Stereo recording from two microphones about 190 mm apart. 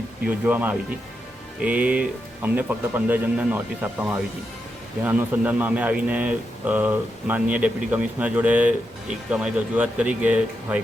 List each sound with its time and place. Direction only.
0.3 s a man's voice: 10° right (ahead or behind)
5.0 s a man's voice: 10° right (ahead or behind)